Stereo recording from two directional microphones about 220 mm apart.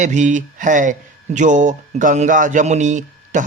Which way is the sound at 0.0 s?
35° right (ahead or behind).